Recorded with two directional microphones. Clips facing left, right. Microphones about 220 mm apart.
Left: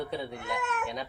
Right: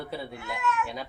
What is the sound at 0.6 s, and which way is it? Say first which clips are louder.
Speech: right 7 dB; 55° left (ahead or behind).